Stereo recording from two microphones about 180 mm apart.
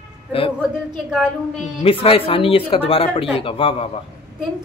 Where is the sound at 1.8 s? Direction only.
30° left (ahead or behind).